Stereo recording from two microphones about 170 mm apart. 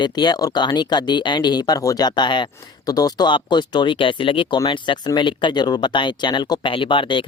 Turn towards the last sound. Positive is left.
turn(degrees=30)  # may be behind; listen again after turning